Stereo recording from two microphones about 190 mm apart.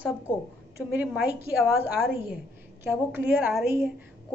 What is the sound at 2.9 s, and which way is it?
A woman's voice, 10° right (ahead or behind).